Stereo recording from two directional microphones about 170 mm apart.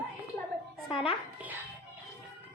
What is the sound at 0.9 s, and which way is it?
Speech, 30° left (ahead or behind).